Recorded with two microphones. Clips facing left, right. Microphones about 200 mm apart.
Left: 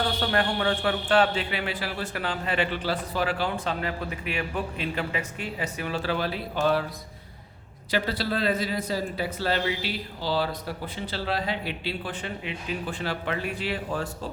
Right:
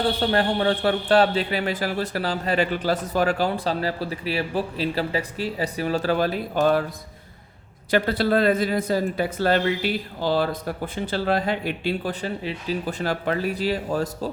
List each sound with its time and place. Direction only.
0.2 s a man's voice: 30° right (ahead or behind); by 6.8 s 50° right (ahead or behind)
7.9 s speech: 55° right (ahead or behind)